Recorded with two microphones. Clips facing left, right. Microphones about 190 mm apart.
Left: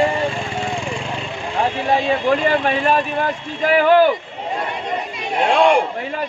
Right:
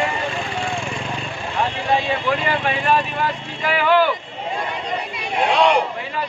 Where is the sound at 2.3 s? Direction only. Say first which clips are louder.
Left 5 dB; 45° left (ahead or behind).